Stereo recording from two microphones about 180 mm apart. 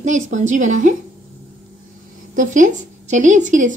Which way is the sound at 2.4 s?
45° right (ahead or behind).